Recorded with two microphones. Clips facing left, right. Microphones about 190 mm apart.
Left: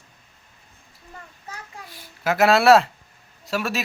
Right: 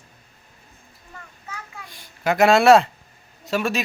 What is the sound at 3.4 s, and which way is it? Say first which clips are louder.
Speech: right 3 dB; centre (ahead or behind).